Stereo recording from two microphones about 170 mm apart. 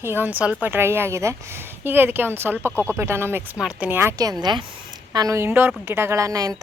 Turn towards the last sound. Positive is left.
turn(degrees=-20)  # may be behind; listen again after turning